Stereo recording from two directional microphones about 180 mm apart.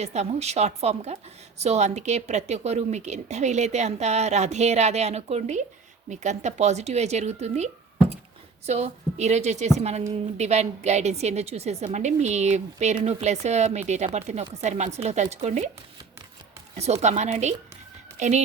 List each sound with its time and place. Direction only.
0.0 s a woman's voice: 35° right (ahead or behind)
16.7 s a woman's voice: 35° right (ahead or behind)